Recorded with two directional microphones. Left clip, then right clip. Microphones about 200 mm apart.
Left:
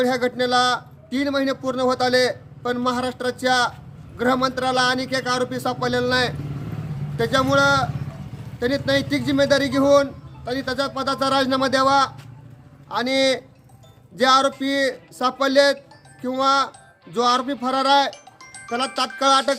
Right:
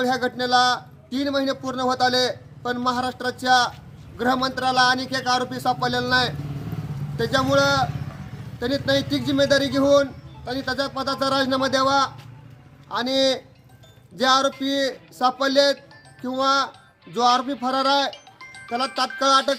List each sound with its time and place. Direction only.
0.0 s a man's voice: 10° left (ahead or behind)
18.3 s music: 65° left (ahead or behind)
18.7 s a man's voice: 10° left (ahead or behind)